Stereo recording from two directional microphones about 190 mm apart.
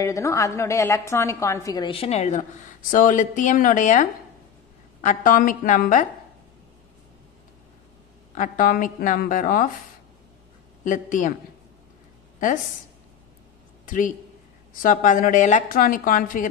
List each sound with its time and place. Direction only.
0.0 s a woman's voice: 15° left (ahead or behind); by 6.0 s 45° left (ahead or behind)
8.4 s a woman's voice: 45° left (ahead or behind)
10.8 s a woman's voice: 45° left (ahead or behind)
13.8 s a woman's voice: 45° left (ahead or behind)